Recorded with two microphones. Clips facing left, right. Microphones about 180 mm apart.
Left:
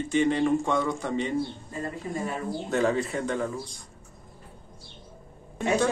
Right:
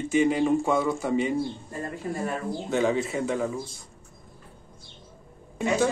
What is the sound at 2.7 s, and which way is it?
A man's voice, centre (ahead or behind).